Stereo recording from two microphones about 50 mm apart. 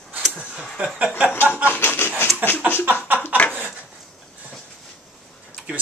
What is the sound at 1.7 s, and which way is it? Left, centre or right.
Speech, left.